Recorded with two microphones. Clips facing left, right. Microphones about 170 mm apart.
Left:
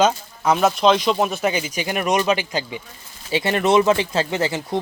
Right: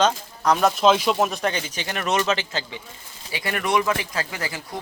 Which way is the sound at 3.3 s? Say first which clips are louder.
Left 6 dB; 25° left (ahead or behind).